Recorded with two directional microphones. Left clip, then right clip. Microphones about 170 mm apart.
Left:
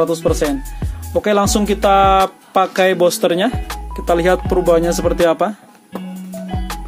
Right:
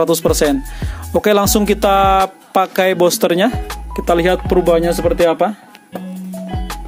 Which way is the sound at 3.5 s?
Centre (ahead or behind).